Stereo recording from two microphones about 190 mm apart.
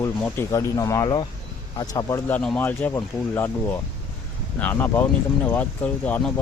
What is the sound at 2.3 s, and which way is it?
Speech, 5° left (ahead or behind).